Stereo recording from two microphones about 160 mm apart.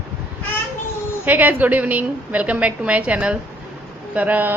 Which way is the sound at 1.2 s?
10° right (ahead or behind).